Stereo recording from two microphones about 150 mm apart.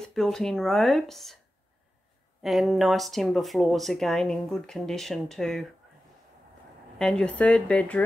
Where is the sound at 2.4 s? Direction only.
Centre (ahead or behind).